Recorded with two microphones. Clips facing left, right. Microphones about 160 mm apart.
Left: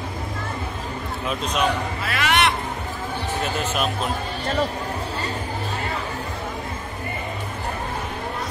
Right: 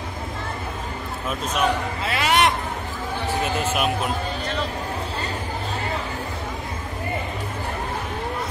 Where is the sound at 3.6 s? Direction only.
10° right (ahead or behind).